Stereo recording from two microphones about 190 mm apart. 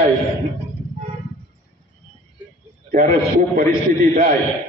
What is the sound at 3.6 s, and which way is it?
Speech, 50° right (ahead or behind).